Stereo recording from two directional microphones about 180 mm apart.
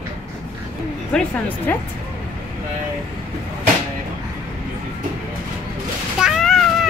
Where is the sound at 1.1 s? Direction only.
5° left (ahead or behind).